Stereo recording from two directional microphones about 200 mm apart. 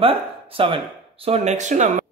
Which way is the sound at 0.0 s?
25° right (ahead or behind).